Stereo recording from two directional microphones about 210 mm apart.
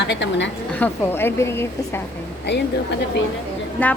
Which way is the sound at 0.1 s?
60° left (ahead or behind).